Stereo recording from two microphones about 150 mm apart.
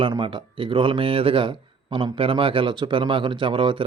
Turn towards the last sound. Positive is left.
turn(degrees=-35)  # may be behind; listen again after turning